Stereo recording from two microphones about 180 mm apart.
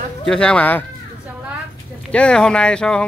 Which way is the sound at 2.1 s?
5° left (ahead or behind).